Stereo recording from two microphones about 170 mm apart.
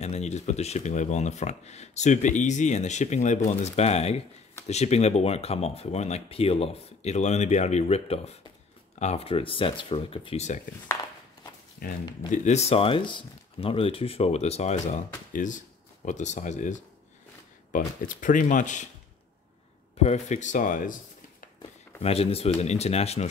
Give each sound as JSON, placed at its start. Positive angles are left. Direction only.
{"t": 0.0, "sound": "speech", "side_deg": 40}
{"t": 12.3, "sound": "speech", "side_deg": 40}
{"t": 17.7, "sound": "speech", "side_deg": 50}
{"t": 20.0, "sound": "speech", "side_deg": 40}
{"t": 22.0, "sound": "speech", "side_deg": 35}